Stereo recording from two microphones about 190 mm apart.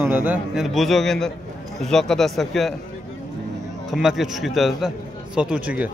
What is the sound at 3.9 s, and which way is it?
A man's voice, centre (ahead or behind).